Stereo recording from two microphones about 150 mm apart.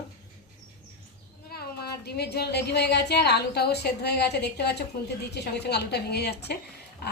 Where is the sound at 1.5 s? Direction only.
90° left.